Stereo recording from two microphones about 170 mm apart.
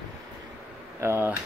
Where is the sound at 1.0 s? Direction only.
15° right (ahead or behind).